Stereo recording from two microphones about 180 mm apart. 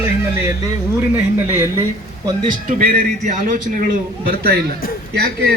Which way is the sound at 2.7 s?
50° right (ahead or behind).